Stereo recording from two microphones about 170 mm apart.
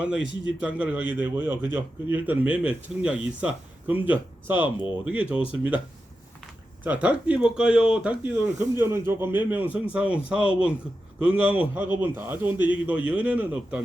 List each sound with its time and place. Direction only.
0.0 s a man's voice: 5° right (ahead or behind)
4.5 s speech: 25° left (ahead or behind)
5.0 s a man's voice: 5° right (ahead or behind)
6.8 s a man's voice: 10° right (ahead or behind)